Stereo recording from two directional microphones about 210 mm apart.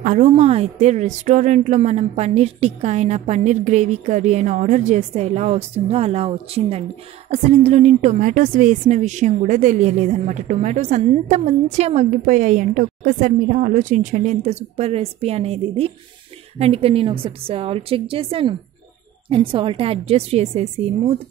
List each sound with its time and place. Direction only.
0.0 s a woman's voice: 35° right (ahead or behind)